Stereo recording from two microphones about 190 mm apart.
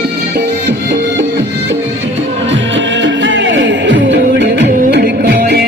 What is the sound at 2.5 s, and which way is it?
Music, 75° right (ahead or behind).